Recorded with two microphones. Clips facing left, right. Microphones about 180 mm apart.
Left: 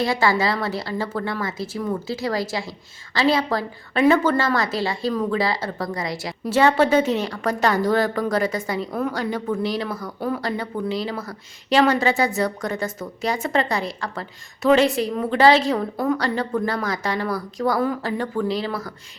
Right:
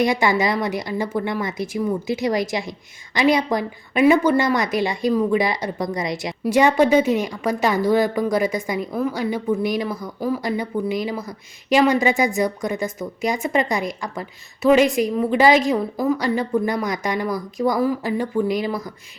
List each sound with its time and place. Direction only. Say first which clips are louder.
0.0 s a woman's voice: right 2 dB; 15° right (ahead or behind)